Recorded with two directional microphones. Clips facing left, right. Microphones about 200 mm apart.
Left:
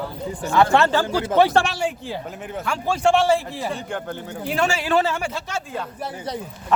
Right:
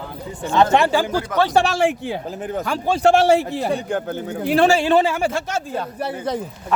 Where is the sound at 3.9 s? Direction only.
40° right (ahead or behind); by 5.1 s 25° right (ahead or behind).